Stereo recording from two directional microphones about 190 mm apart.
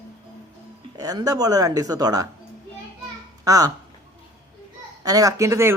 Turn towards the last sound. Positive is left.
turn(degrees=-15)  # may be behind; listen again after turning